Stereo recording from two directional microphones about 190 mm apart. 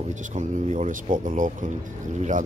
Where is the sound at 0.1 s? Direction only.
40° right (ahead or behind).